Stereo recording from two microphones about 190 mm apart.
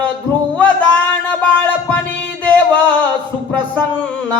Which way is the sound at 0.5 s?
5° left (ahead or behind).